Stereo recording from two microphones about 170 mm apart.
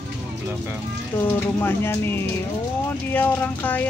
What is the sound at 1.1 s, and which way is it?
Speech, 15° left (ahead or behind).